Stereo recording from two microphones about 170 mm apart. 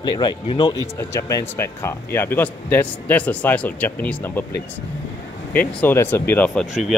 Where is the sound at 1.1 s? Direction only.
15° left (ahead or behind).